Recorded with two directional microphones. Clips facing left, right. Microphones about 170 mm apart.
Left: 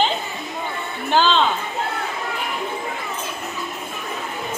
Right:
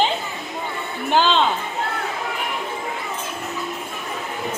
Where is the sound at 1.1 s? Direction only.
15° right (ahead or behind).